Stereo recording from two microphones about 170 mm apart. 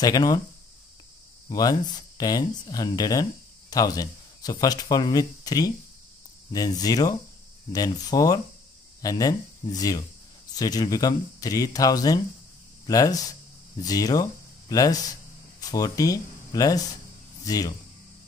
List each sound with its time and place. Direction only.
0.0 s speech: 20° left (ahead or behind)
1.5 s speech: 20° left (ahead or behind)